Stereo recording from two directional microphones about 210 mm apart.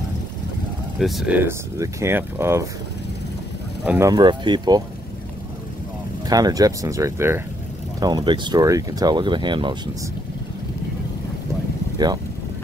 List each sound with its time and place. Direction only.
0.9 s speech: centre (ahead or behind)
3.8 s speech: 10° right (ahead or behind)
4.1 s speech: 20° right (ahead or behind)
6.2 s speech: 15° right (ahead or behind)